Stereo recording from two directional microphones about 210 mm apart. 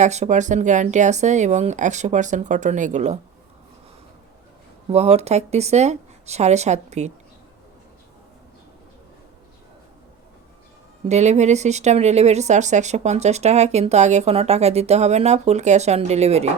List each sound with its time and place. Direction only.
0.0 s speech: 35° right (ahead or behind)
4.9 s speech: 30° right (ahead or behind)
11.1 s speech: 35° right (ahead or behind)